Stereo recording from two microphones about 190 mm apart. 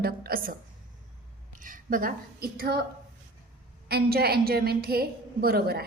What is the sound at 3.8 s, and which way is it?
A woman's voice, 55° right (ahead or behind).